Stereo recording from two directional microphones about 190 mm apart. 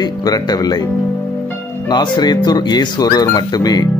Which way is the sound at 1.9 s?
25° left (ahead or behind).